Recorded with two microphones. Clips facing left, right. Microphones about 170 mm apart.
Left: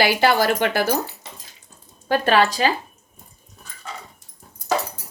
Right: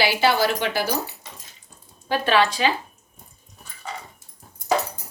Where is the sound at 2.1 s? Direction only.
45° left (ahead or behind).